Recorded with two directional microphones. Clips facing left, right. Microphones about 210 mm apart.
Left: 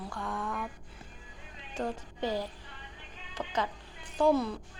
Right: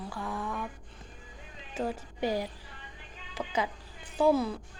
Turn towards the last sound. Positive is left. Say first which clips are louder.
# right 1 dB
turn(degrees=0)  # may be behind; listen again after turning